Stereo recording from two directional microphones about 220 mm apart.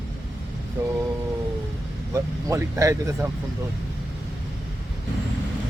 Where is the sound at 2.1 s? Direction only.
15° right (ahead or behind).